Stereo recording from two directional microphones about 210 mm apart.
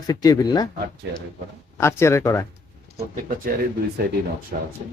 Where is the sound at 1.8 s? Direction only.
15° left (ahead or behind).